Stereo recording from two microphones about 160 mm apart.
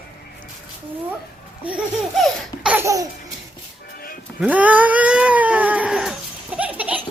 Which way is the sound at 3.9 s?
70° left (ahead or behind).